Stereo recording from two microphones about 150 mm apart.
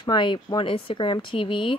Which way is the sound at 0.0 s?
35° left (ahead or behind).